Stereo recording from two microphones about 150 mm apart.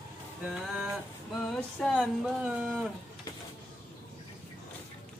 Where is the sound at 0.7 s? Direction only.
5° right (ahead or behind).